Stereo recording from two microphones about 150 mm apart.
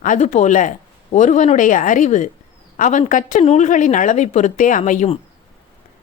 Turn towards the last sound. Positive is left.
turn(degrees=55)  # may be behind; listen again after turning